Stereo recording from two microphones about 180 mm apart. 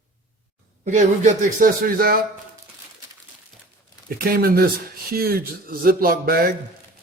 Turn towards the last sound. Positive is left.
turn(degrees=-55)  # may be behind; listen again after turning